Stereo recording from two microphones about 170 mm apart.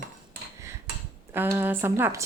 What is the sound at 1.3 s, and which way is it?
Dishes, 10° right (ahead or behind).